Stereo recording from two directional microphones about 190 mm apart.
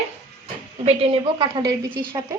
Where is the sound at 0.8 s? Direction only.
30° right (ahead or behind).